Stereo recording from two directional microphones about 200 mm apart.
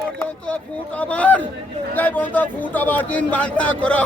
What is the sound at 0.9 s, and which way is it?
A man's voice, 5° left (ahead or behind).